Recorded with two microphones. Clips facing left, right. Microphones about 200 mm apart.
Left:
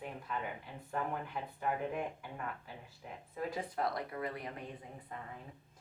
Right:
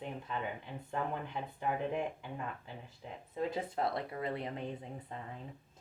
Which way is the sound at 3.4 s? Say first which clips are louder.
Right 2 dB; 25° right (ahead or behind).